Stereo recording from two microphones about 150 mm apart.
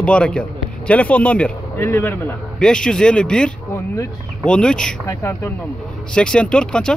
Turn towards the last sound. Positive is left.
turn(degrees=5)  # may be behind; listen again after turning